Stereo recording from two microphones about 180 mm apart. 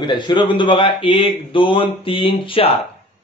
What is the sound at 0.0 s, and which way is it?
Speech, 25° left (ahead or behind).